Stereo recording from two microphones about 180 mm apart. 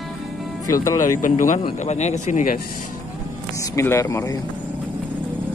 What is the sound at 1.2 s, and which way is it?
Speech, 45° left (ahead or behind).